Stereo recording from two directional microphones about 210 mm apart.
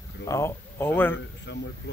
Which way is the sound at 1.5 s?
55° left (ahead or behind).